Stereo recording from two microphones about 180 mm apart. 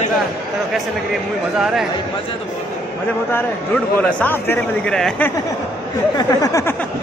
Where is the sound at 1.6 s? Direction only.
5° right (ahead or behind).